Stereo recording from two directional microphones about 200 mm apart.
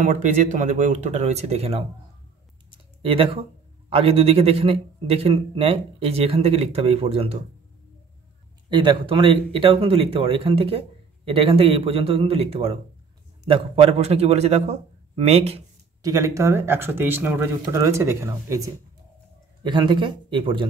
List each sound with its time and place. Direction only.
0.0 s a man's voice: 40° right (ahead or behind)
3.0 s a man's voice: 25° right (ahead or behind)
8.6 s a man's voice: 25° right (ahead or behind)
16.0 s a man's voice: 15° right (ahead or behind)